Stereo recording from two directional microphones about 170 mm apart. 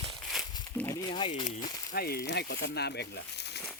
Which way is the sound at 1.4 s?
60° left (ahead or behind).